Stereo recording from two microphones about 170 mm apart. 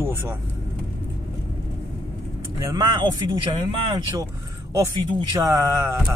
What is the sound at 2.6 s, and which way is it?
Speech, 25° right (ahead or behind).